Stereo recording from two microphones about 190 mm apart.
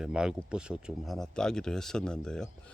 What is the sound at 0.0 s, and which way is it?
Speech, 5° right (ahead or behind).